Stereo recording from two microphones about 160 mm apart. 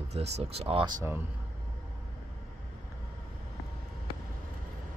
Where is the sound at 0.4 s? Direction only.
40° right (ahead or behind).